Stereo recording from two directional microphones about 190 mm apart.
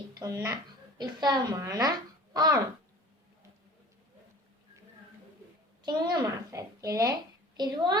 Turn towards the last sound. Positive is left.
turn(degrees=-20)  # may be behind; listen again after turning